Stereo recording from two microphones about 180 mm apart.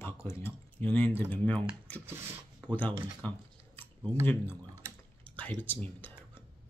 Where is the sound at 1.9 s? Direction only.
10° left (ahead or behind).